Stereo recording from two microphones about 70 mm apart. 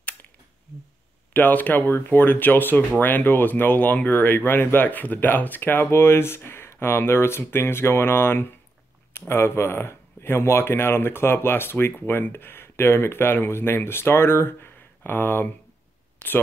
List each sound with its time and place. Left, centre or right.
1.3 s speech: left